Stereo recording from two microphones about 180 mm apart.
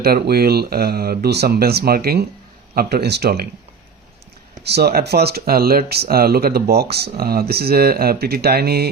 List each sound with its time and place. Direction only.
0.0 s speech: 60° right (ahead or behind)
4.6 s speech: 65° right (ahead or behind)